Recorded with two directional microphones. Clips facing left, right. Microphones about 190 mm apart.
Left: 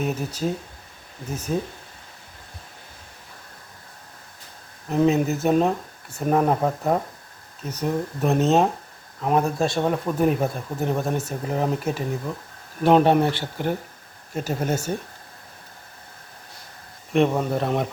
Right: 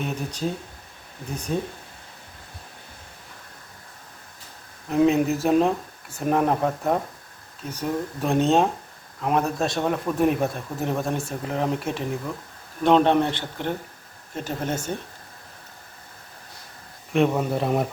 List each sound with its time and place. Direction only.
0.0 s speech: 5° left (ahead or behind)
4.9 s speech: centre (ahead or behind)
17.1 s speech: centre (ahead or behind)